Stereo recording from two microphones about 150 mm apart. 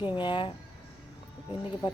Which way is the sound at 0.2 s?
30° left (ahead or behind).